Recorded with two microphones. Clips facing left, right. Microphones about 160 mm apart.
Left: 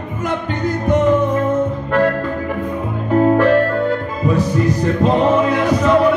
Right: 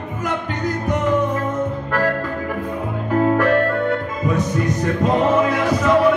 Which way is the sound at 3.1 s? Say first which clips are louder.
Left 4 dB; 30° left (ahead or behind).